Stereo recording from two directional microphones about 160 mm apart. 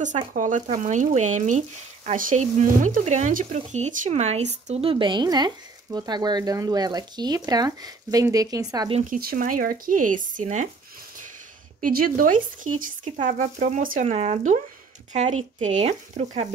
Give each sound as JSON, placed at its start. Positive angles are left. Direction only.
{"t": 0.3, "sound": "speech", "side_deg": -50}
{"t": 9.1, "sound": "speech", "side_deg": -65}
{"t": 11.8, "sound": "speech", "side_deg": -60}